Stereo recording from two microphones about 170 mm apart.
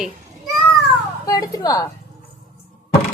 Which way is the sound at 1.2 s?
20° left (ahead or behind).